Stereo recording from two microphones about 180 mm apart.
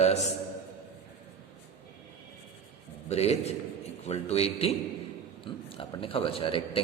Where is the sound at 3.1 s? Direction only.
35° left (ahead or behind).